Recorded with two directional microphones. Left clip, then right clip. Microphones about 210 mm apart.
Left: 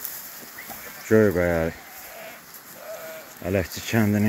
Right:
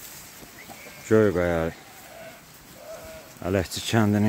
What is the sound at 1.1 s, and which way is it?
Speech, 5° right (ahead or behind).